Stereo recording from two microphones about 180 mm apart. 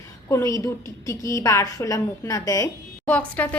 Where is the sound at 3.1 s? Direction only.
5° left (ahead or behind).